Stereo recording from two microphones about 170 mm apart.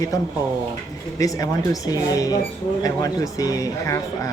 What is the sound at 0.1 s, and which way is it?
Speech, 20° left (ahead or behind).